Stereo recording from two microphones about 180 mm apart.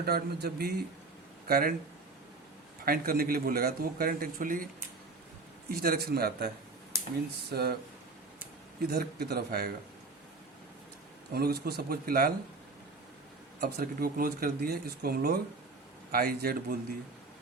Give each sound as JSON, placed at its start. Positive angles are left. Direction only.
{"t": 0.0, "sound": "a man's voice", "side_deg": -60}
{"t": 2.8, "sound": "a man's voice", "side_deg": -55}
{"t": 5.7, "sound": "a man's voice", "side_deg": -55}
{"t": 6.9, "sound": "a sound", "side_deg": -15}
{"t": 7.5, "sound": "a man's voice", "side_deg": -60}
{"t": 8.8, "sound": "a man's voice", "side_deg": -60}
{"t": 11.3, "sound": "a man's voice", "side_deg": -60}
{"t": 13.6, "sound": "a man's voice", "side_deg": -55}